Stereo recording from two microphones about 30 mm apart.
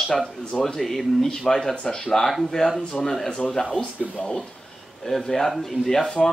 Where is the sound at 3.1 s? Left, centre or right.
Left.